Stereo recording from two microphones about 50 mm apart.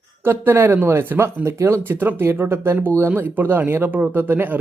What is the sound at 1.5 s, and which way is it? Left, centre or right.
Speech, right.